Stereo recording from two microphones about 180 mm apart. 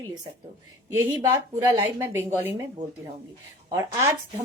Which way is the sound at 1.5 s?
15° right (ahead or behind).